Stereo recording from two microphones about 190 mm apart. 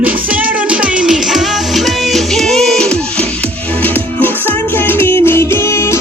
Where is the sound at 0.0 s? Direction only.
10° right (ahead or behind).